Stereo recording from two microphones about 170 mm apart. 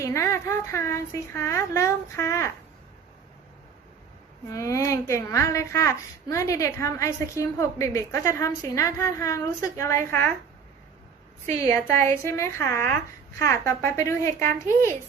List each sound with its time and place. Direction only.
0.0 s a child's voice: 15° left (ahead or behind)
4.5 s a child's voice: 20° left (ahead or behind)
11.4 s a child's voice: 15° left (ahead or behind)